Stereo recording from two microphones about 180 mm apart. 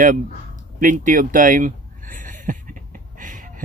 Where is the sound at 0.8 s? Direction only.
45° right (ahead or behind).